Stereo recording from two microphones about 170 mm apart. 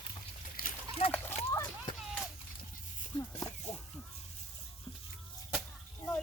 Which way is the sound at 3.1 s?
30° left (ahead or behind).